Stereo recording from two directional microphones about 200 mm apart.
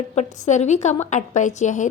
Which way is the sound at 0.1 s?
35° left (ahead or behind).